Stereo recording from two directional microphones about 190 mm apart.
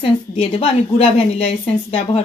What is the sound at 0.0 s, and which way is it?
A woman's voice, 30° left (ahead or behind).